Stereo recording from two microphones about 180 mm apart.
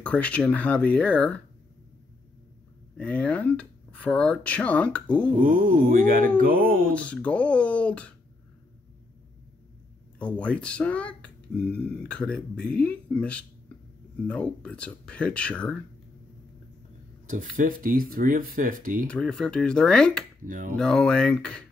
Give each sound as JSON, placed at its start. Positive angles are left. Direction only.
{"t": 0.0, "sound": "speech", "side_deg": 5}
{"t": 3.0, "sound": "speech", "side_deg": 5}
{"t": 5.4, "sound": "speech", "side_deg": -50}
{"t": 6.9, "sound": "speech", "side_deg": 5}
{"t": 10.1, "sound": "speech", "side_deg": 5}
{"t": 17.3, "sound": "speech", "side_deg": -45}
{"t": 19.0, "sound": "speech", "side_deg": 5}
{"t": 20.4, "sound": "speech", "side_deg": -50}
{"t": 20.7, "sound": "speech", "side_deg": 5}